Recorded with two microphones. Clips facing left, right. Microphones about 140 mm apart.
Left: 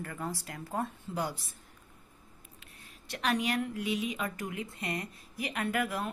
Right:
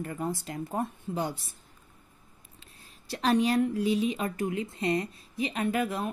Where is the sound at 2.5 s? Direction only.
30° right (ahead or behind).